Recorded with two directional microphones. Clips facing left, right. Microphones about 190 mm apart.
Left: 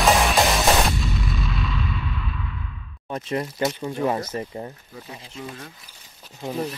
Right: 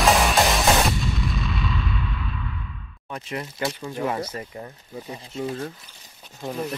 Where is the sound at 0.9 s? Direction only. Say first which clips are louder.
Even; centre (ahead or behind).